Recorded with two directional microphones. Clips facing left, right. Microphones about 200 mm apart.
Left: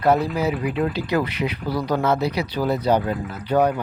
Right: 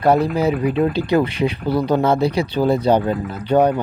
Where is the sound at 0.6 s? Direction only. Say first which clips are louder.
Right 5 dB; 30° right (ahead or behind).